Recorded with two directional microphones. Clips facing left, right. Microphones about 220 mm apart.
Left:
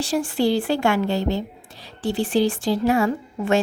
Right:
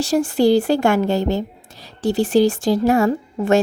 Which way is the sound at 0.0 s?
40° right (ahead or behind).